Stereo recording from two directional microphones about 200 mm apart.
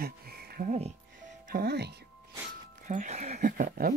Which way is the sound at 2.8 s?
40° right (ahead or behind).